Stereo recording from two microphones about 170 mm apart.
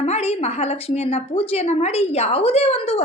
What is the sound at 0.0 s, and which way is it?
A woman's voice, 40° left (ahead or behind).